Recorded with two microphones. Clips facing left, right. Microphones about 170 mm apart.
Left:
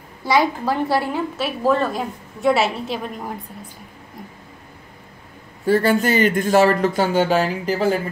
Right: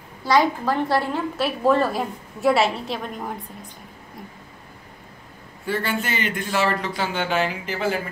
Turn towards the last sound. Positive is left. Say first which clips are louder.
# left 6 dB
turn(degrees=35)  # may be behind; listen again after turning